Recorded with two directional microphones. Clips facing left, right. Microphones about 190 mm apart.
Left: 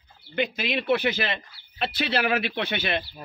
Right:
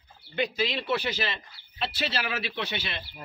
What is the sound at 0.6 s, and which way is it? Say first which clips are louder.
Speech: left 7 dB; 55° left (ahead or behind).